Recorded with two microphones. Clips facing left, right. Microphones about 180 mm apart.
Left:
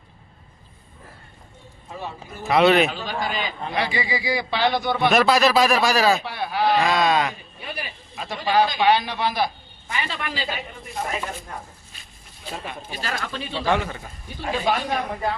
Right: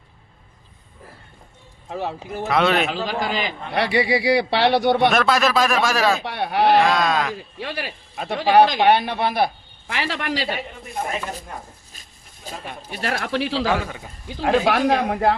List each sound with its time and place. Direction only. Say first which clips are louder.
1.9 s a man's voice: right 7 dB; 75° right (ahead or behind)
2.5 s speech: left 3 dB; centre (ahead or behind)
2.9 s a man's voice: right 4 dB; 90° right; by 5.0 s 70° right (ahead or behind)
5.0 s speech: even; centre (ahead or behind)
6.2 s a man's voice: right 4 dB; 65° right (ahead or behind)
6.8 s speech: even; centre (ahead or behind)
7.6 s speech: right 4 dB; 90° right
8.1 s speech: right 5 dB; 55° right (ahead or behind)
8.4 s a man's voice: right 5 dB; 80° right
12.5 s a sound: left 1 dB; 45° right (ahead or behind)
12.9 s a man's voice: right 7 dB; 65° right (ahead or behind)